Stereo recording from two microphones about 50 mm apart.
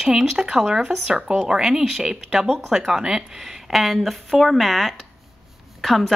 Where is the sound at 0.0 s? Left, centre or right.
Centre.